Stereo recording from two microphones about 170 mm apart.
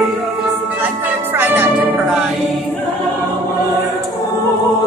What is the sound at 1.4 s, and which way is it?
Music, 10° right (ahead or behind).